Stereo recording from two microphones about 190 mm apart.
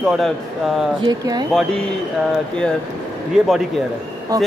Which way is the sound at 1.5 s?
5° left (ahead or behind).